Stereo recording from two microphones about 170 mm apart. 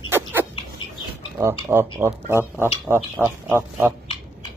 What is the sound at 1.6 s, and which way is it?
Speech, 15° right (ahead or behind).